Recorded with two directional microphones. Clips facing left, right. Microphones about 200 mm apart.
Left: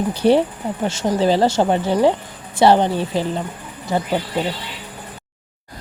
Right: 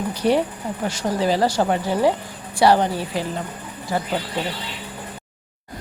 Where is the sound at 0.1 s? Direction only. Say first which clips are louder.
Left 4 dB; 30° left (ahead or behind).